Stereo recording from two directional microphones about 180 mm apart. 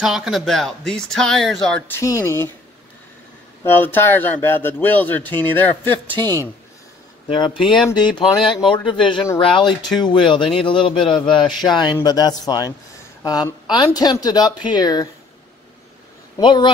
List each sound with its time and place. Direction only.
0.0 s speech: centre (ahead or behind)
2.0 s speech: 15° left (ahead or behind)
3.6 s speech: 10° left (ahead or behind)
7.2 s speech: 25° left (ahead or behind)
16.3 s speech: 25° left (ahead or behind)